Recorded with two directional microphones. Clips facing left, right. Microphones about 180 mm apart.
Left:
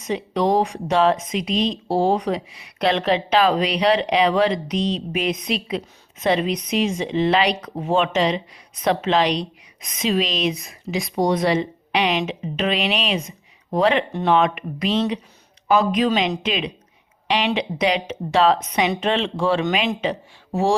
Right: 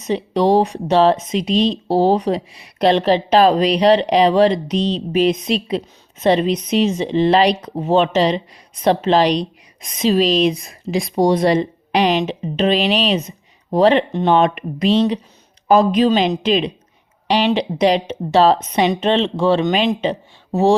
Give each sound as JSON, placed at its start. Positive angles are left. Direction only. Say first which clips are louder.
{"t": 0.1, "sound": "a woman's voice", "louder": "right 5 dB", "side_deg": -30}